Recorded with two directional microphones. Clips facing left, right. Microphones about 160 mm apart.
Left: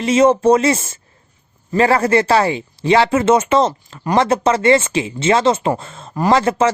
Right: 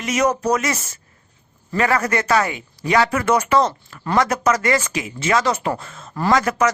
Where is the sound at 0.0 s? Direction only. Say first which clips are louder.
Left 7 dB; 30° left (ahead or behind).